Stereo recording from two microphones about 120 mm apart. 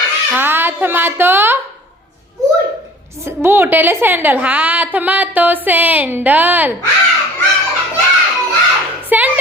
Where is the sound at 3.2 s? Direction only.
20° right (ahead or behind).